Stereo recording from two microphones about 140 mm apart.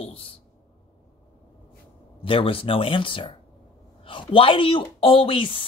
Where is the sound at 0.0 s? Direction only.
40° left (ahead or behind).